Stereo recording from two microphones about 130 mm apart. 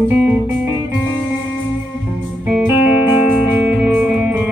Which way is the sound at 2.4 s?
15° right (ahead or behind).